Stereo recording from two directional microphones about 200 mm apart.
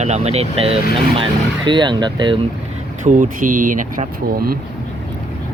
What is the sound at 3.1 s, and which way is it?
Speech, 40° right (ahead or behind).